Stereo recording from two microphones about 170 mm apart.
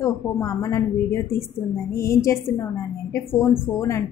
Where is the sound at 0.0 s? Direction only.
20° left (ahead or behind).